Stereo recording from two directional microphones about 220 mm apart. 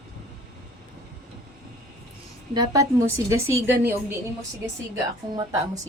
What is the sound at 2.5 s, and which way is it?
A woman's voice, 15° right (ahead or behind).